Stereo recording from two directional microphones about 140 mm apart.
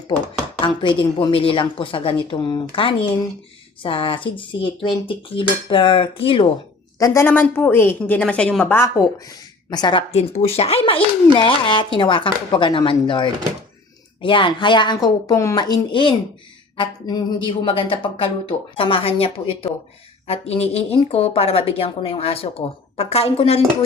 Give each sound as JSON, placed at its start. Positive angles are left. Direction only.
{"t": 0.6, "sound": "speech", "side_deg": 35}
{"t": 7.0, "sound": "a woman's voice", "side_deg": 20}
{"t": 9.6, "sound": "speech", "side_deg": 30}
{"t": 10.1, "sound": "speech", "side_deg": 50}